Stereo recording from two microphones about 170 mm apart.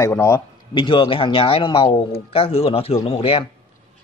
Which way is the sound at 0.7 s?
30° left (ahead or behind).